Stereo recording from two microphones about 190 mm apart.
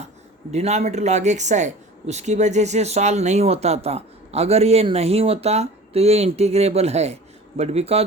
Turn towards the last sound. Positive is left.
turn(degrees=-30)  # may be behind; listen again after turning